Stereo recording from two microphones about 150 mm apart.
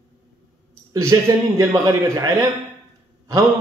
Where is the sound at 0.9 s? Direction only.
20° right (ahead or behind).